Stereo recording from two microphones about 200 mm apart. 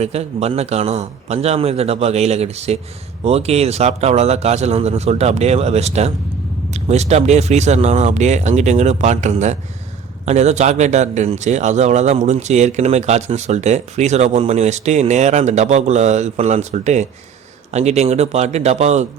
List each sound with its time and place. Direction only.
0.0 s a man's voice: 30° right (ahead or behind)